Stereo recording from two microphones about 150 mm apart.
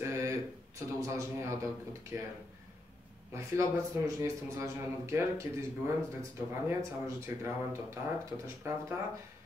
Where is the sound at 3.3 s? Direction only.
20° right (ahead or behind).